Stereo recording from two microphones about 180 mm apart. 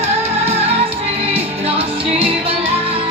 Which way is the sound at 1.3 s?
30° right (ahead or behind).